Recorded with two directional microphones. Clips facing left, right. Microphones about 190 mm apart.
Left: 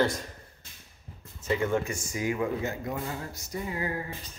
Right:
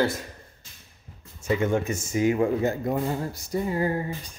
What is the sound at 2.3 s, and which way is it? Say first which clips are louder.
Speech: right 7 dB; 35° right (ahead or behind).